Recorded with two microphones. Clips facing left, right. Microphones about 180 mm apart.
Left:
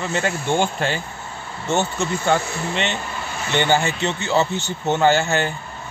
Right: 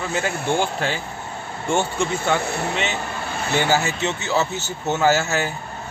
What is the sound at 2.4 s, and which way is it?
Speech, 60° right (ahead or behind).